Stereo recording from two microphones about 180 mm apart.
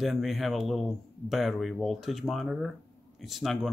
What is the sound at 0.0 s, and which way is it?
Speech, centre (ahead or behind).